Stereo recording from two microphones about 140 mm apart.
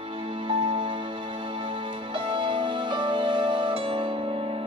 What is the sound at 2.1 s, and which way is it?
Music, 35° right (ahead or behind).